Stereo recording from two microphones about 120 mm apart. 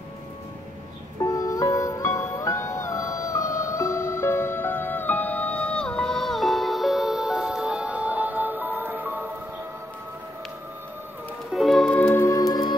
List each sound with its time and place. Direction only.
1.2 s music: 30° left (ahead or behind); by 9.3 s 15° right (ahead or behind)
11.5 s music: centre (ahead or behind)
11.9 s music: 15° left (ahead or behind)
12.4 s music: 35° left (ahead or behind)